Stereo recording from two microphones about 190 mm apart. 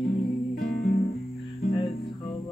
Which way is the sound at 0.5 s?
45° left (ahead or behind).